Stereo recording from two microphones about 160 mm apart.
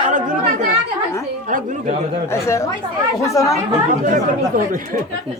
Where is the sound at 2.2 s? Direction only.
20° left (ahead or behind).